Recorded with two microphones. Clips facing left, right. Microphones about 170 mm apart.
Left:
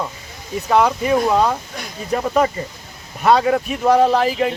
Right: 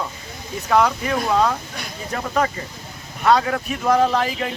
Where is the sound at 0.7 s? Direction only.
10° left (ahead or behind).